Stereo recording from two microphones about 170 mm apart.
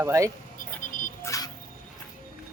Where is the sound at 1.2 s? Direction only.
20° left (ahead or behind).